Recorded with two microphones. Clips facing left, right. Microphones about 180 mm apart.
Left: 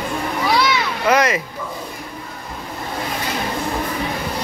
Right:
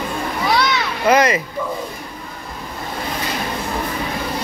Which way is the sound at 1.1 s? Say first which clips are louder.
Right 2 dB; centre (ahead or behind).